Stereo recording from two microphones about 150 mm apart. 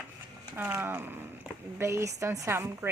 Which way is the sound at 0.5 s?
10° right (ahead or behind).